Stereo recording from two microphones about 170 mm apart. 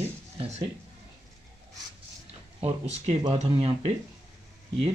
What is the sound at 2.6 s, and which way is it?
Speech, 40° right (ahead or behind).